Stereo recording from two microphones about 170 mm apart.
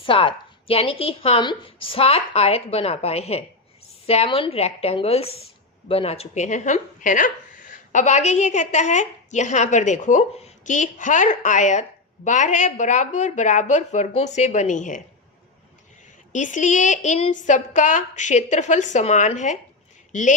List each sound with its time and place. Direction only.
0.0 s a woman's voice: 30° left (ahead or behind); by 15.0 s 45° left (ahead or behind)
16.3 s speech: 45° left (ahead or behind)